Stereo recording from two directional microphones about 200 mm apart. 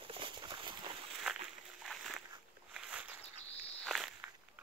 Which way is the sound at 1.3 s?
5° right (ahead or behind).